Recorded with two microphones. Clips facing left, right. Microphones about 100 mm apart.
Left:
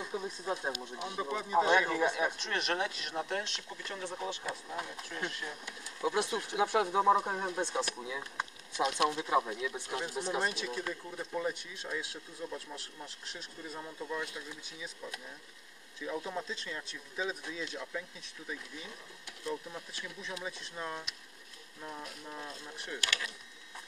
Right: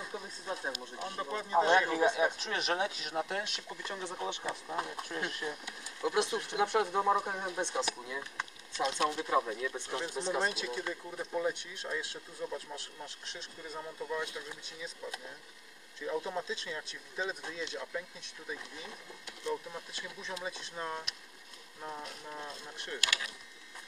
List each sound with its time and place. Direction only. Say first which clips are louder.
0.1 s speech: left 6 dB; 10° left (ahead or behind); by 5.2 s 25° right (ahead or behind)
6.0 s speech: right 1 dB; centre (ahead or behind)
9.4 s speech: right 1 dB; 5° left (ahead or behind)
16.0 s speech: right 2 dB; 5° right (ahead or behind)
22.3 s speech: right 1 dB; 10° right (ahead or behind)